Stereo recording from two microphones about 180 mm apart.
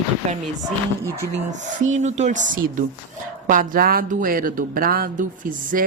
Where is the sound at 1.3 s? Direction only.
45° right (ahead or behind).